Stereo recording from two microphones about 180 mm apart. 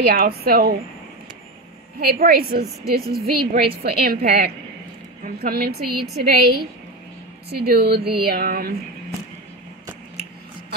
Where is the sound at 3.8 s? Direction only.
60° right (ahead or behind).